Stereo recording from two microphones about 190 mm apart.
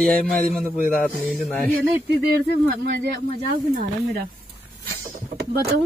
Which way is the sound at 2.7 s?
60° right (ahead or behind).